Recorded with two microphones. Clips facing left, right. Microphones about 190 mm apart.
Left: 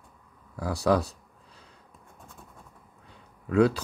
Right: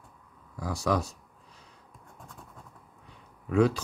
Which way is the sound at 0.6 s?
65° left (ahead or behind).